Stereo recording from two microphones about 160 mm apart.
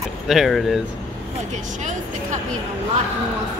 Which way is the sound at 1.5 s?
50° right (ahead or behind).